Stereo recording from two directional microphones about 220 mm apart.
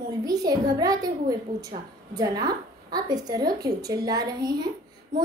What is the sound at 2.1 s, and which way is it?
A woman's voice, 15° right (ahead or behind).